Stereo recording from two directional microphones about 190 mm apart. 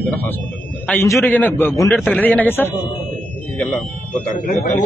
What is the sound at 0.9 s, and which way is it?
A man's voice, 10° left (ahead or behind).